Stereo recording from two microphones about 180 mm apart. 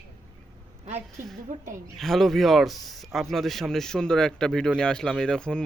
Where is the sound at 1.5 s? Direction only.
45° right (ahead or behind).